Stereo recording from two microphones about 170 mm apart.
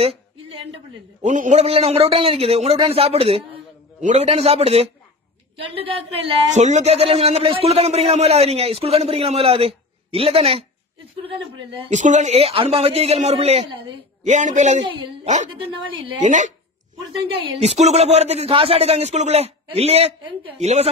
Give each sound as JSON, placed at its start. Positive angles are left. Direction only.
{"t": 1.2, "sound": "a man's voice", "side_deg": -45}
{"t": 11.9, "sound": "a man's voice", "side_deg": -45}
{"t": 14.2, "sound": "speech", "side_deg": -45}
{"t": 15.5, "sound": "a woman's voice", "side_deg": -30}
{"t": 16.2, "sound": "speech", "side_deg": -45}
{"t": 17.2, "sound": "a man's voice", "side_deg": -30}